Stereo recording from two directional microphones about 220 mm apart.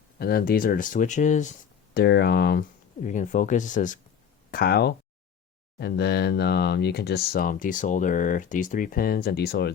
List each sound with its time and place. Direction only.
0.2 s speech: 45° left (ahead or behind)
2.0 s speech: 50° left (ahead or behind)
4.5 s speech: 45° left (ahead or behind)